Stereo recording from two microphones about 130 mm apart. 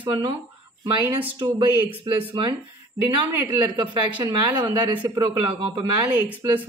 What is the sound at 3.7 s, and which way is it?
Speech, 35° right (ahead or behind).